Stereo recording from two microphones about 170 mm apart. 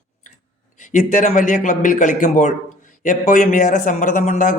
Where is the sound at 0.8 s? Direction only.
50° left (ahead or behind).